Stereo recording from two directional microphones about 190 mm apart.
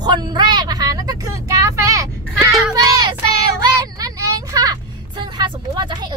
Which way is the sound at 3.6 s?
20° right (ahead or behind).